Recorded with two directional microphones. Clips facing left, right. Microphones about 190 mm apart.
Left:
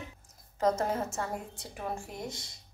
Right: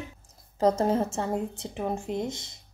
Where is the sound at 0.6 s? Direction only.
30° right (ahead or behind).